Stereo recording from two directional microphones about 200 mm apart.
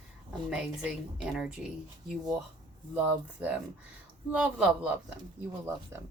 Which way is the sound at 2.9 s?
5° right (ahead or behind).